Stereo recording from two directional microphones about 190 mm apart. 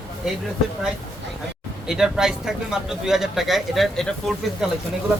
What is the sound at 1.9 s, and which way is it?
A man's voice, 5° right (ahead or behind).